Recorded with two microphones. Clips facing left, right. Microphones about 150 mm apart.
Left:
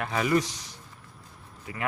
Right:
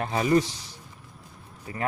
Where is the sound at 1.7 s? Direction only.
35° right (ahead or behind).